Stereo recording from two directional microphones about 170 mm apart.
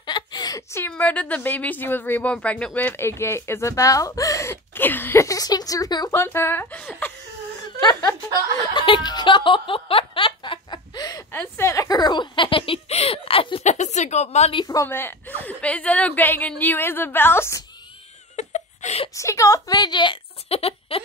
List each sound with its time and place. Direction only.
0.0 s a woman's voice: 25° left (ahead or behind)
7.8 s snicker: 20° left (ahead or behind)
11.3 s speech: 15° left (ahead or behind); by 14.6 s 40° left (ahead or behind)
14.6 s a woman's voice: 20° left (ahead or behind)
18.3 s wail: 40° left (ahead or behind)
19.1 s a woman's voice: 15° left (ahead or behind); by 21.0 s 35° left (ahead or behind)